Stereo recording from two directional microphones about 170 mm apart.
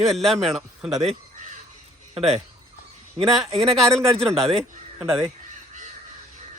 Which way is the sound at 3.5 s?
35° right (ahead or behind).